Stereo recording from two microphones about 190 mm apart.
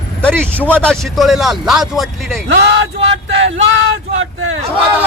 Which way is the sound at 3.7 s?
90° right.